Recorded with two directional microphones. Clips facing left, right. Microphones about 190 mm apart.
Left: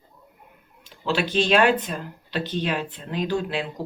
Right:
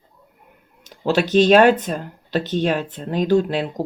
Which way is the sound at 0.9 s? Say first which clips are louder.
Right 7 dB; 45° right (ahead or behind).